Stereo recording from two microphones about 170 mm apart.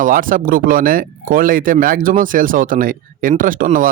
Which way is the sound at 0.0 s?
55° right (ahead or behind).